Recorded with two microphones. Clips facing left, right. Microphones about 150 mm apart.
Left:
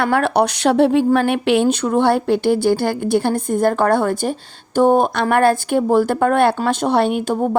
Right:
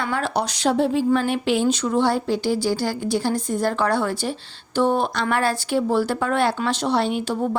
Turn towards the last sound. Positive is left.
turn(degrees=50)  # may be behind; listen again after turning